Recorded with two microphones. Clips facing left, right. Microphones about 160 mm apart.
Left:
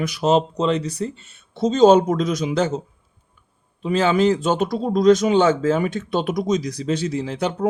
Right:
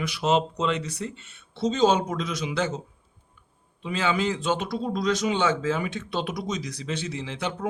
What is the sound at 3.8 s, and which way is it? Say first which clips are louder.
Speech: left 8 dB; 45° left (ahead or behind).